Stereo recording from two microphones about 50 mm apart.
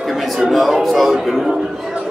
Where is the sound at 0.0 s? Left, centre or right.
Centre.